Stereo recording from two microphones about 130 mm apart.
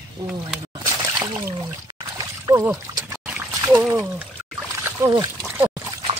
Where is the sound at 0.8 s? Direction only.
25° right (ahead or behind).